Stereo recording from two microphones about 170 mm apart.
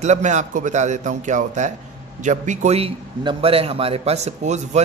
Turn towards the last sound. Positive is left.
turn(degrees=-40)  # may be behind; listen again after turning